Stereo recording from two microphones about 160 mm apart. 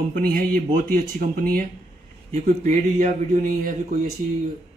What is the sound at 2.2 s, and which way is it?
Speech, 45° right (ahead or behind).